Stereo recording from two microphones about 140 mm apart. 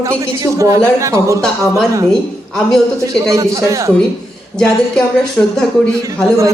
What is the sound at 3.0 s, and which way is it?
Speech, 25° right (ahead or behind).